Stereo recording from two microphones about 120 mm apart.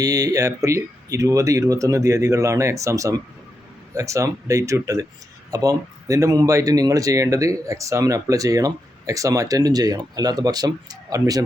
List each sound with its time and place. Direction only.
0.0 s speech: 30° right (ahead or behind)